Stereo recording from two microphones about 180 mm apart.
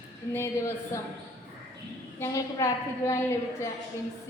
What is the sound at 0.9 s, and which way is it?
Speech, 15° left (ahead or behind).